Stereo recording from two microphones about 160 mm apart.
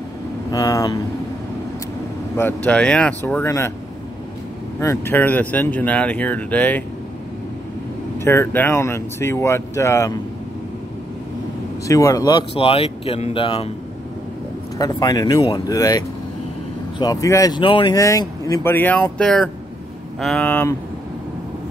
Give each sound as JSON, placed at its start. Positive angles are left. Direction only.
{"t": 0.5, "sound": "speech", "side_deg": 20}
{"t": 2.3, "sound": "speech", "side_deg": 10}
{"t": 4.7, "sound": "speech", "side_deg": 15}
{"t": 8.2, "sound": "speech", "side_deg": 15}
{"t": 11.9, "sound": "speech", "side_deg": 20}
{"t": 12.5, "sound": "speech", "side_deg": 35}
{"t": 14.8, "sound": "speech", "side_deg": 25}
{"t": 17.0, "sound": "speech", "side_deg": 20}
{"t": 17.9, "sound": "speech", "side_deg": 20}